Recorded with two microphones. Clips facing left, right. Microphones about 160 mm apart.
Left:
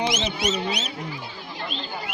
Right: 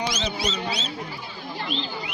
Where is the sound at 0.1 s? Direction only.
20° left (ahead or behind).